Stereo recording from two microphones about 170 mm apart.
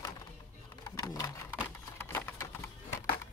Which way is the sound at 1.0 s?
20° left (ahead or behind).